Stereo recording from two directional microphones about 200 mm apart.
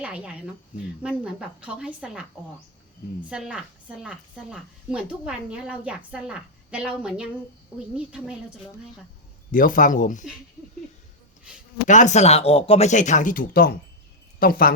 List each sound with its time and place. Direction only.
0.0 s a woman's voice: 5° right (ahead or behind)
3.2 s a woman's voice: 5° right (ahead or behind)
9.5 s speech: 45° left (ahead or behind)
11.9 s speech: 35° left (ahead or behind)